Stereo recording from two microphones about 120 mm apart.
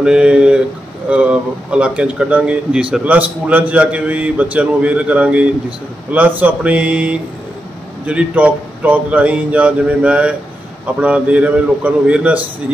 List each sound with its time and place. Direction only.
0.0 s speech: 10° right (ahead or behind)